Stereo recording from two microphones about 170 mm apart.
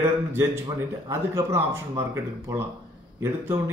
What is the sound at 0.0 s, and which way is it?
Speech, 15° right (ahead or behind).